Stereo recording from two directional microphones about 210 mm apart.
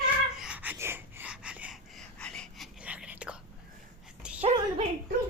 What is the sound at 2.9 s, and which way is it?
Whispering, 5° right (ahead or behind).